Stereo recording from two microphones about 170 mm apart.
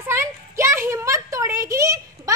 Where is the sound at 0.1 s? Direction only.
15° right (ahead or behind).